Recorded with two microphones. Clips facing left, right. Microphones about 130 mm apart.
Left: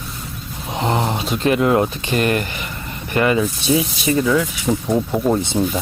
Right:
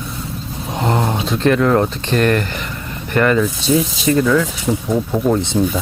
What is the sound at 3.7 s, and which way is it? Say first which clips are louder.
Speech: right 2 dB; 40° right (ahead or behind).